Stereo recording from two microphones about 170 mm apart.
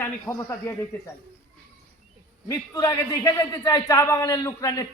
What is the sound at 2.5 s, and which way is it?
A man's voice, 20° left (ahead or behind).